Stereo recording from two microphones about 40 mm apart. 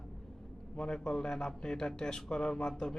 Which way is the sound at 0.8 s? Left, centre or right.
Centre.